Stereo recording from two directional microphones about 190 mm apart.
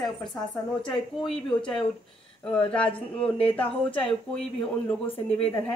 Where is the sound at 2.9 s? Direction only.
30° left (ahead or behind).